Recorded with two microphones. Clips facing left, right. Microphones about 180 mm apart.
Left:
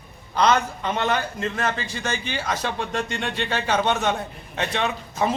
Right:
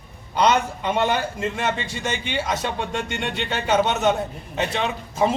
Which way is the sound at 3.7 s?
5° right (ahead or behind).